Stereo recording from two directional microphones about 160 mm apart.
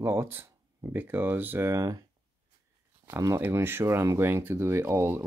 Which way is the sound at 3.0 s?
15° right (ahead or behind).